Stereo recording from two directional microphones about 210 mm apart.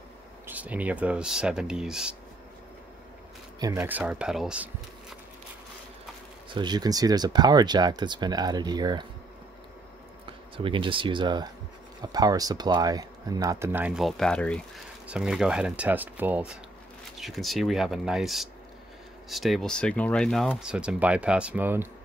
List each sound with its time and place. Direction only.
0.5 s speech: 5° right (ahead or behind)
3.5 s speech: 15° right (ahead or behind)
6.5 s speech: 20° right (ahead or behind)
10.2 s speech: 25° right (ahead or behind); by 21.8 s 10° right (ahead or behind)